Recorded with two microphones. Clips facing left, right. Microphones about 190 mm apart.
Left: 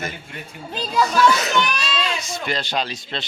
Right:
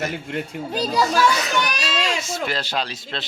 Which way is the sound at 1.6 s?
45° right (ahead or behind).